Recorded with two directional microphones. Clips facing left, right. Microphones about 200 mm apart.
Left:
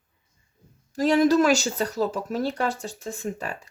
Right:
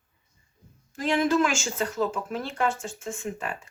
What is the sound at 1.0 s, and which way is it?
Speech, 40° left (ahead or behind).